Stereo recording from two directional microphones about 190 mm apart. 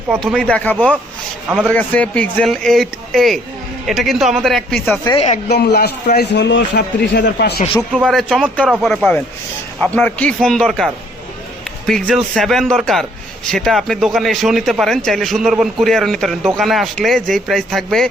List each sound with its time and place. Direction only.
0.2 s speech: centre (ahead or behind)
1.5 s a man's voice: 5° right (ahead or behind)
1.7 s a man's voice: 5° left (ahead or behind)
5.5 s a man's voice: 55° left (ahead or behind)
7.9 s a man's voice: centre (ahead or behind)
9.8 s a man's voice: 10° left (ahead or behind)